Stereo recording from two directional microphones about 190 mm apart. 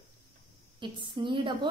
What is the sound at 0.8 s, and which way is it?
Speech, 25° right (ahead or behind).